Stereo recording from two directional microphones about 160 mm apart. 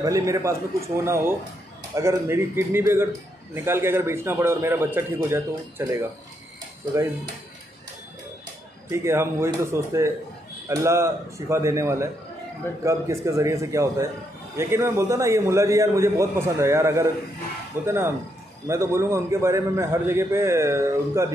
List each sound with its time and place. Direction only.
0.0 s a man's voice: 20° right (ahead or behind)
8.9 s a man's voice: 15° right (ahead or behind)